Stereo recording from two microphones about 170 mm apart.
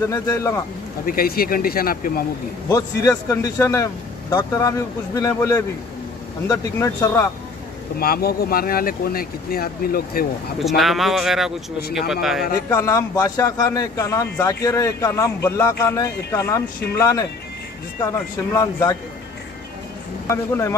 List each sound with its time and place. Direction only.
0.0 s a man's voice: 20° left (ahead or behind)
1.0 s speech: 60° left (ahead or behind)
2.7 s a man's voice: 20° left (ahead or behind)
8.0 s speech: 65° left (ahead or behind)
10.8 s speech: centre (ahead or behind)
12.6 s a man's voice: 15° left (ahead or behind)
18.5 s speech: 20° left (ahead or behind)
20.2 s a man's voice: 15° left (ahead or behind)